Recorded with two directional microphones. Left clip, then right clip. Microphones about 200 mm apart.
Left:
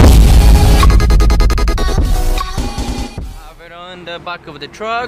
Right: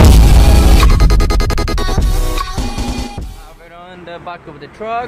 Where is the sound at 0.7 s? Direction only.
Centre (ahead or behind).